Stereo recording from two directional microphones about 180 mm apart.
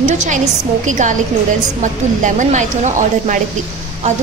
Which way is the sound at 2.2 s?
45° right (ahead or behind).